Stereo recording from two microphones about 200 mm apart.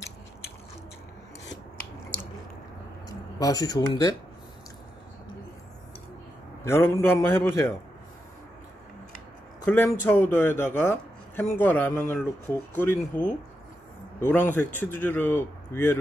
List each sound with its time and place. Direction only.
3.1 s speech: 20° left (ahead or behind)
6.6 s a man's voice: 10° left (ahead or behind)
9.7 s a man's voice: 10° left (ahead or behind)